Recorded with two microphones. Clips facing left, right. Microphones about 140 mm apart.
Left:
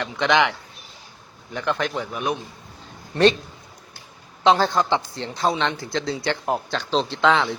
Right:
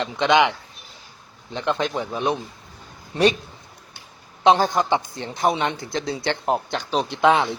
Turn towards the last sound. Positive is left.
turn(degrees=-20)  # may be behind; listen again after turning